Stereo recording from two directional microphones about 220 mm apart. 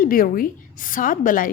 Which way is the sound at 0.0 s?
40° left (ahead or behind).